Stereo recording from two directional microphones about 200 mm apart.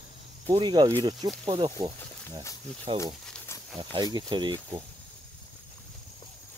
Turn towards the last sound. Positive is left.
turn(degrees=-20)  # may be behind; listen again after turning